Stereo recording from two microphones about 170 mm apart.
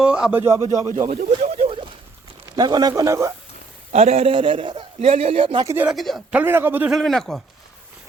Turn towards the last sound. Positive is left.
turn(degrees=0)  # may be behind; listen again after turning